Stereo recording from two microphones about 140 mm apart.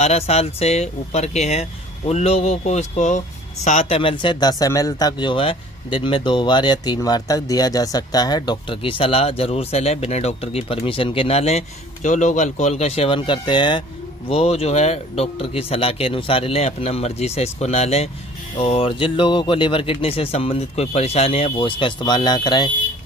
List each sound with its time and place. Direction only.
0.0 s speech: 50° left (ahead or behind)
4.0 s speech: 35° left (ahead or behind)